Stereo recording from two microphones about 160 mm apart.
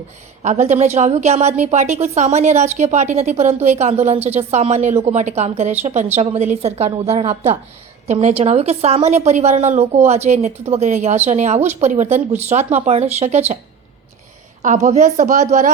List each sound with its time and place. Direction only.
0.4 s a woman's voice: 45° right (ahead or behind)
14.6 s a woman's voice: 45° right (ahead or behind)